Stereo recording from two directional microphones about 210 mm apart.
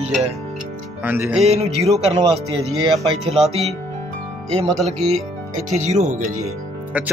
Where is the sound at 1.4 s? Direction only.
30° right (ahead or behind).